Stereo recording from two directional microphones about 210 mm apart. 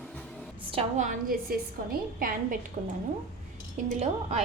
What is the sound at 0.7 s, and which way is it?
A woman's voice, 30° right (ahead or behind).